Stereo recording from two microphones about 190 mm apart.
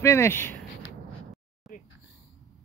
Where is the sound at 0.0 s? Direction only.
15° left (ahead or behind).